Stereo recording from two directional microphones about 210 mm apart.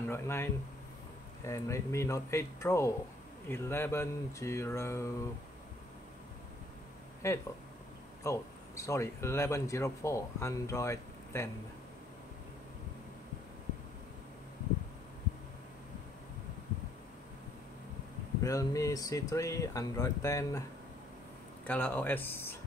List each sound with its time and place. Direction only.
0.0 s speech: 10° left (ahead or behind)
7.2 s speech: 15° left (ahead or behind)
18.4 s speech: 15° left (ahead or behind)
21.6 s speech: 10° left (ahead or behind)